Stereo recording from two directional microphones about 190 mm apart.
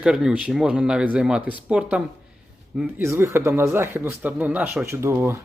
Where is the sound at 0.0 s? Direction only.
5° right (ahead or behind).